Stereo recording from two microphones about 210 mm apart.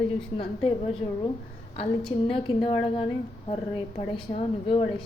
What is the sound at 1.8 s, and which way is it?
A woman's voice, 25° left (ahead or behind).